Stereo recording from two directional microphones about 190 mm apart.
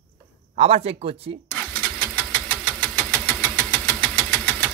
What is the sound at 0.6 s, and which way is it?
Speech, 35° right (ahead or behind).